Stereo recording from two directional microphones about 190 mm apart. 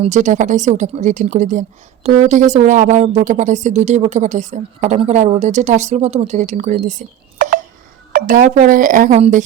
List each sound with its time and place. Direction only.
0.0 s a woman's voice: 40° right (ahead or behind)
8.1 s speech: 45° right (ahead or behind)